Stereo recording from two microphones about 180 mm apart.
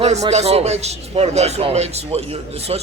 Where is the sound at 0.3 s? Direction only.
35° right (ahead or behind).